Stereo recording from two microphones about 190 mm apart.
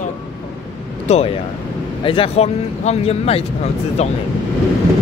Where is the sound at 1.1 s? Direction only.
35° left (ahead or behind).